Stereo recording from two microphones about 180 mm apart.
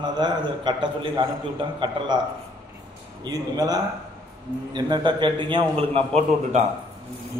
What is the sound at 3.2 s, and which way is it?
A man's voice, 20° right (ahead or behind).